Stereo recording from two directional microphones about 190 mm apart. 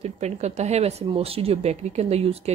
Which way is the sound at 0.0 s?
35° right (ahead or behind).